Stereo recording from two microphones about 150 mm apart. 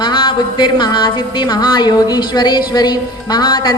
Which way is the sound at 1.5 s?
30° left (ahead or behind).